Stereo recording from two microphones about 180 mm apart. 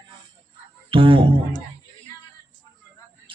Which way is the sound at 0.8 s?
30° right (ahead or behind).